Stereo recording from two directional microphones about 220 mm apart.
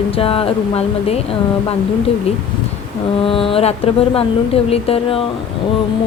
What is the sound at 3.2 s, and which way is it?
Speech, 25° left (ahead or behind).